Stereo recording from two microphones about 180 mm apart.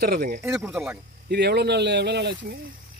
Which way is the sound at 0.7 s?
5° right (ahead or behind).